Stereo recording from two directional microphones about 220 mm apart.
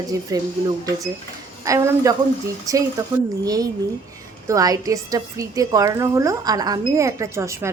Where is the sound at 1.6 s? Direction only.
15° right (ahead or behind).